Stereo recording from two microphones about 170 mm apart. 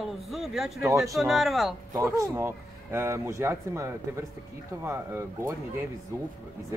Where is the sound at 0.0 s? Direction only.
Centre (ahead or behind).